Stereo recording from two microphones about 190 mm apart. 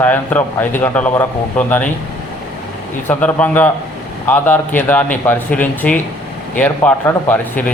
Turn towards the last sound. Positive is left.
turn(degrees=10)  # may be behind; listen again after turning